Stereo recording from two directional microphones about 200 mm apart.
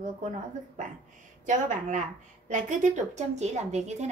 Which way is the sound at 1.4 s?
40° right (ahead or behind).